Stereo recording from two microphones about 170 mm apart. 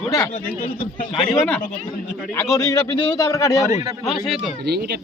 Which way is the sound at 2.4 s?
15° left (ahead or behind).